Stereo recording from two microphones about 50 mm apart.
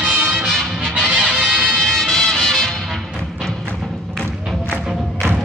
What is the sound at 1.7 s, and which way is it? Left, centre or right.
Music, centre.